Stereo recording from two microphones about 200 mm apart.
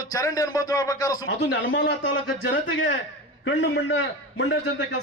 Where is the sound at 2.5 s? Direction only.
70° left (ahead or behind).